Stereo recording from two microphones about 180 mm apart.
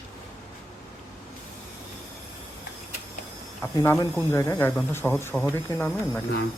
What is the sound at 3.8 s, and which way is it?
Speech, 10° left (ahead or behind).